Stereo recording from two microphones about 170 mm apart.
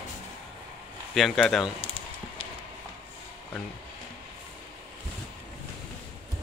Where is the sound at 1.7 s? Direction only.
30° left (ahead or behind).